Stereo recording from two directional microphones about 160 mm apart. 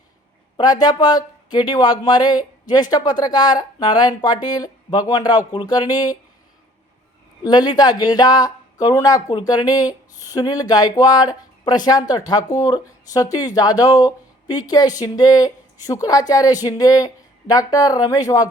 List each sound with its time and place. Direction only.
0.5 s speech: 25° left (ahead or behind)
7.4 s speech: 25° left (ahead or behind)